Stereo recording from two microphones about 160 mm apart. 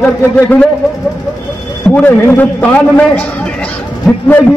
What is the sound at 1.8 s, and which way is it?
A man's voice, 10° left (ahead or behind).